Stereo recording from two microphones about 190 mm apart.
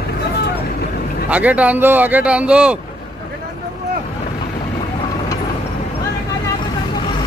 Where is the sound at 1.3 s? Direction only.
5° right (ahead or behind).